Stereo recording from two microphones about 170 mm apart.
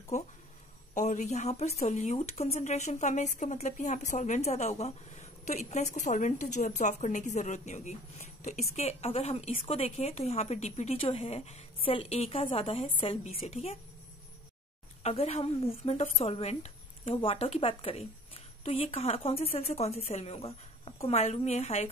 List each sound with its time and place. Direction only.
0.1 s a woman's voice: 45° left (ahead or behind)
15.0 s a woman's voice: 40° left (ahead or behind)